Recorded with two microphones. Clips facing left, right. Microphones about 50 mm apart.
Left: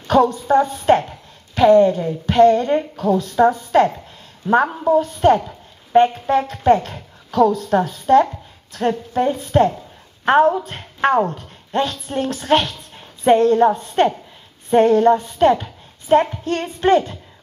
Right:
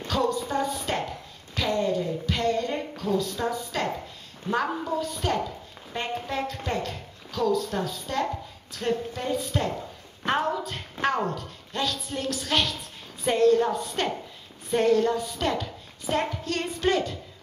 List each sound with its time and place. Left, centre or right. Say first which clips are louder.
0.1 s a woman's voice: left 12 dB; left